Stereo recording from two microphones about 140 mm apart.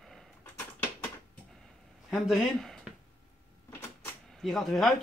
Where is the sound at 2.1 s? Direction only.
Centre (ahead or behind).